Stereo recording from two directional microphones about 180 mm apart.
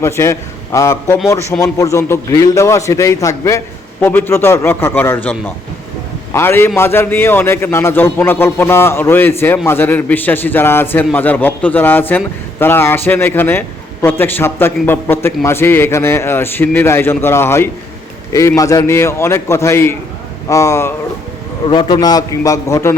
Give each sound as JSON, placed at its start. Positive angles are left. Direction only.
{"t": 0.0, "sound": "a man's voice", "side_deg": 15}